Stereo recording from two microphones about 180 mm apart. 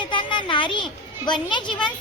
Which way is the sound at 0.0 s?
25° left (ahead or behind).